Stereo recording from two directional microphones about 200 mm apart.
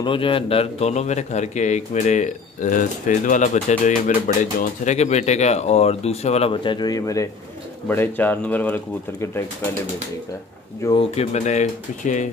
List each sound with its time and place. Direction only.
0.0 s speech: 25° left (ahead or behind)
10.8 s speech: 20° left (ahead or behind)
11.1 s speech: 35° left (ahead or behind)